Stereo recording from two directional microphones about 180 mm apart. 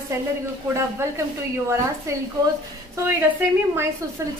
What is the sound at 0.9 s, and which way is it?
Speech, 15° right (ahead or behind).